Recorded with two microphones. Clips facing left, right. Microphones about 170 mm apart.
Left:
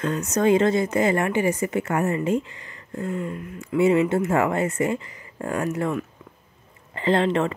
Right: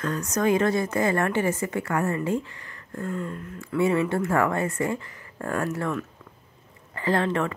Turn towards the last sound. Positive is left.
turn(degrees=25)  # may be behind; listen again after turning